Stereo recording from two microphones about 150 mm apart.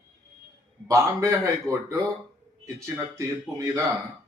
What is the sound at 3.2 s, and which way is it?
Speech, 20° right (ahead or behind).